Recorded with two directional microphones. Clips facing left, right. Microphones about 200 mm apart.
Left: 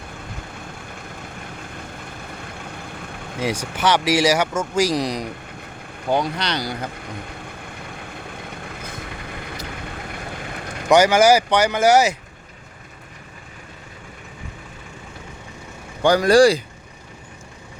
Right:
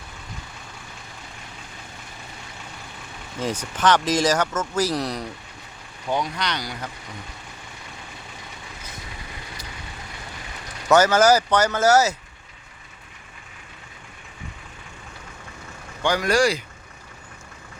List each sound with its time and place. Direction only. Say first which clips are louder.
3.4 s speech: left 1 dB; 10° left (ahead or behind)
6.1 s speech: left 4 dB; 30° left (ahead or behind)
8.4 s vehicle: left 7 dB; 55° left (ahead or behind)
10.8 s speech: left 2 dB; 15° left (ahead or behind)
16.0 s speech: left 7 dB; 35° left (ahead or behind)